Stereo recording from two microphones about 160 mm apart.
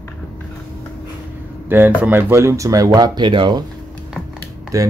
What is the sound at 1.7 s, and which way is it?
Speech, 10° right (ahead or behind).